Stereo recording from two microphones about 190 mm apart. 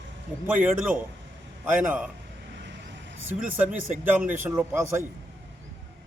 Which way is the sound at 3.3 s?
10° right (ahead or behind).